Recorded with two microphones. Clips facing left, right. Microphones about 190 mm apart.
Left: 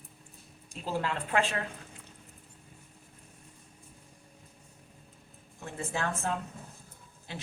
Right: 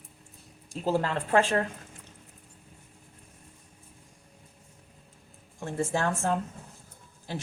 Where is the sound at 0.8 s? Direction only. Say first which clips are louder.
Right 5 dB; 40° right (ahead or behind).